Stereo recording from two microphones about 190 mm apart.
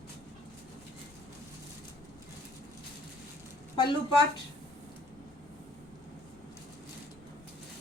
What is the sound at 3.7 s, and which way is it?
Speech, 25° left (ahead or behind).